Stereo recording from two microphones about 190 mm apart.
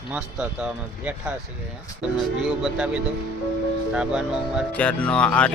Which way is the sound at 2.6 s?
5° right (ahead or behind).